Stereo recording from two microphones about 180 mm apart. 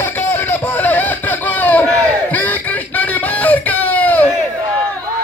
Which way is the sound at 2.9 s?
10° left (ahead or behind).